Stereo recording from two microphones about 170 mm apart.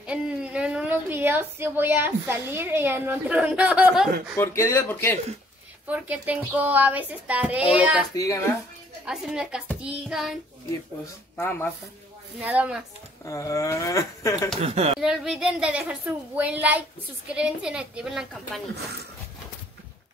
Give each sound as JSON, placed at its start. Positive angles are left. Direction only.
{"t": 0.0, "sound": "a woman's voice", "side_deg": -5}
{"t": 4.4, "sound": "speech", "side_deg": 15}
{"t": 5.9, "sound": "a woman's voice", "side_deg": -10}
{"t": 8.1, "sound": "speech", "side_deg": 20}
{"t": 9.0, "sound": "a woman's voice", "side_deg": -5}
{"t": 11.3, "sound": "speech", "side_deg": 10}
{"t": 12.4, "sound": "a woman's voice", "side_deg": -10}
{"t": 13.2, "sound": "speech", "side_deg": 20}
{"t": 14.6, "sound": "speech", "side_deg": -35}
{"t": 15.0, "sound": "a woman's voice", "side_deg": -5}